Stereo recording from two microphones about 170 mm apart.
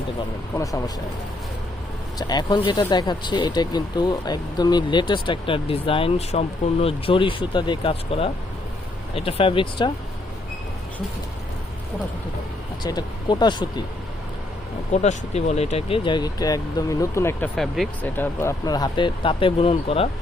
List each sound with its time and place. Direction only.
0.5 s speech: 20° left (ahead or behind)
2.1 s speech: 25° left (ahead or behind)
12.8 s speech: 25° left (ahead or behind)
15.0 s speech: 40° left (ahead or behind); by 17.5 s 15° left (ahead or behind)
17.5 s speech: centre (ahead or behind)
18.2 s speech: 15° left (ahead or behind); by 20.1 s 35° left (ahead or behind)